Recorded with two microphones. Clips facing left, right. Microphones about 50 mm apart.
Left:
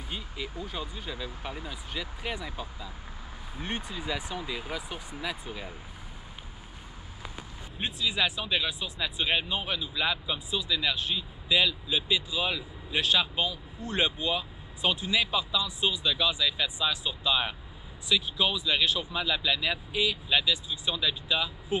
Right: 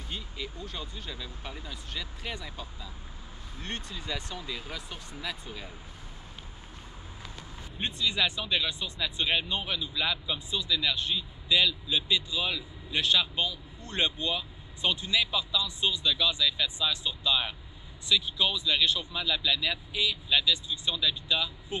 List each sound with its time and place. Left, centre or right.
0.7 s speech: centre
7.7 s speech: centre